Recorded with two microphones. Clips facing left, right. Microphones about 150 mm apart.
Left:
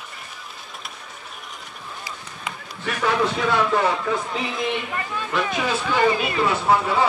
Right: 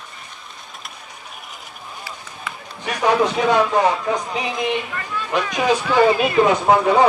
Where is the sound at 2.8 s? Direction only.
20° right (ahead or behind).